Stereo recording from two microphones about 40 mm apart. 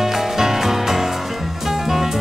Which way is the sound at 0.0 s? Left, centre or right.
Centre.